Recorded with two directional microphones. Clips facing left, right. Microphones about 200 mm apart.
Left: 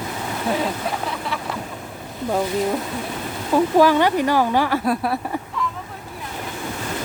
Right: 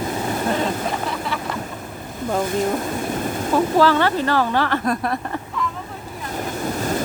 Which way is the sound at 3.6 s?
15° left (ahead or behind).